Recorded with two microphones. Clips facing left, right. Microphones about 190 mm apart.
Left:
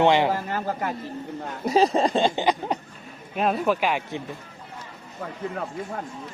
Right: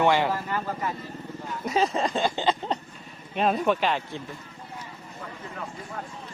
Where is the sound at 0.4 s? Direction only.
65° left (ahead or behind).